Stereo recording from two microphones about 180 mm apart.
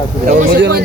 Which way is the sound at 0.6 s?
65° right (ahead or behind).